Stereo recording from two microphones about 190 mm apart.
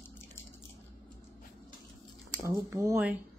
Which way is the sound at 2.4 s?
15° right (ahead or behind).